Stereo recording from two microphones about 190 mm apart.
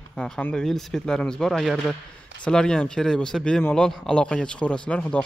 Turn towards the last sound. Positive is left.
turn(degrees=5)  # may be behind; listen again after turning